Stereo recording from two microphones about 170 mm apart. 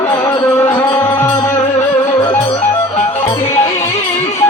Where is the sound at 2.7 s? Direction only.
40° left (ahead or behind).